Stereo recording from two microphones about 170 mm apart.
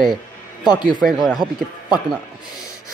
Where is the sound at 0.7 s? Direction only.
25° left (ahead or behind).